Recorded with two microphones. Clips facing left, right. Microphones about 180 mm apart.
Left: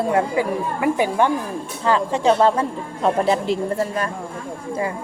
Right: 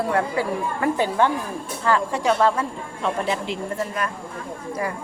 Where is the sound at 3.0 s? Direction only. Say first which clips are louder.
Left 6 dB; 40° left (ahead or behind).